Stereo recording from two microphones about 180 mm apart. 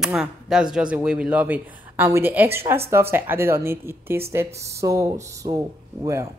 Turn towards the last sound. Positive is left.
turn(degrees=-15)  # may be behind; listen again after turning